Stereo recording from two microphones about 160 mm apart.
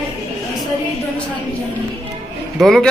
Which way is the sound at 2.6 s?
Centre (ahead or behind).